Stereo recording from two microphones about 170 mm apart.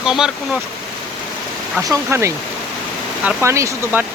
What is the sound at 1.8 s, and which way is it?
Speech, 15° right (ahead or behind).